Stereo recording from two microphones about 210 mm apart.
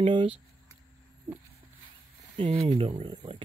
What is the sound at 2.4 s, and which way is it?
Speech, 25° right (ahead or behind).